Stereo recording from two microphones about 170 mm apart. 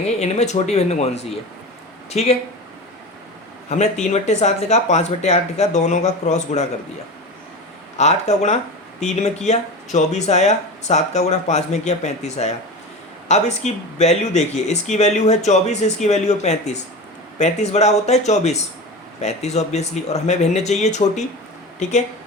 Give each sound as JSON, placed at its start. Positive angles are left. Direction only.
{"t": 0.0, "sound": "speech", "side_deg": 40}
{"t": 3.7, "sound": "speech", "side_deg": 40}
{"t": 7.9, "sound": "speech", "side_deg": 40}